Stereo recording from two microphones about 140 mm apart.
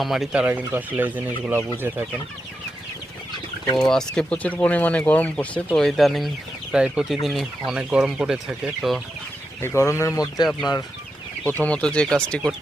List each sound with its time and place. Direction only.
0.0 s speech: centre (ahead or behind)
3.8 s speech: 5° left (ahead or behind)
9.6 s speech: 20° left (ahead or behind)
11.4 s speech: 10° left (ahead or behind)